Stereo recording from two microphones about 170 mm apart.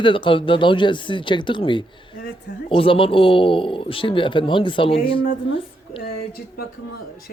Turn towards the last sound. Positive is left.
turn(degrees=65)  # may be behind; listen again after turning